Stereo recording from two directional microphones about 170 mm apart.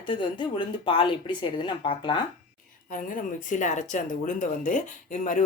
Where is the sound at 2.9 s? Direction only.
50° left (ahead or behind).